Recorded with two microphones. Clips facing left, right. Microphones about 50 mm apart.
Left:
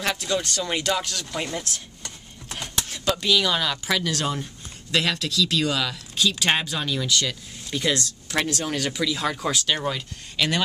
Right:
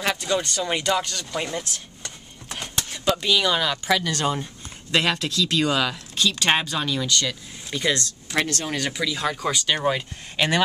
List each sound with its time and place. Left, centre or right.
0.0 s speech: centre
4.9 s speech: right
6.1 s speech: centre
9.8 s speech: right